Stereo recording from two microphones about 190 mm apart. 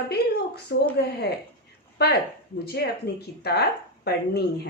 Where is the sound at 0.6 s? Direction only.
60° left (ahead or behind).